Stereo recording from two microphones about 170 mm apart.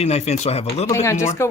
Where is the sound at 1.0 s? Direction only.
15° left (ahead or behind).